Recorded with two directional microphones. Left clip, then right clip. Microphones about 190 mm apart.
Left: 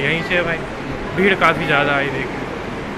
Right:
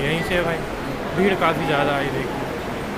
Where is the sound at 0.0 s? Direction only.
20° right (ahead or behind).